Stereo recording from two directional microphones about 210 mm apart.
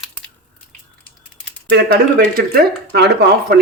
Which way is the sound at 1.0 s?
5° left (ahead or behind).